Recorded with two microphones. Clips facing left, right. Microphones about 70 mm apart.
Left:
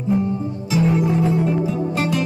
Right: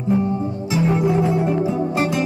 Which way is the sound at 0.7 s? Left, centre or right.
Right.